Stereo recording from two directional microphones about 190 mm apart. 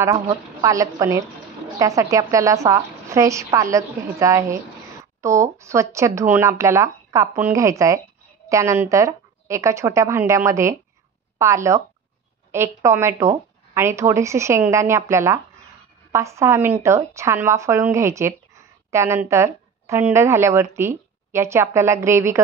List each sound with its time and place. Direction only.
0.0 s a woman's voice: 15° right (ahead or behind)